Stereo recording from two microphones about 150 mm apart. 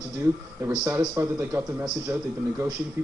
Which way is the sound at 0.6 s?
20° right (ahead or behind).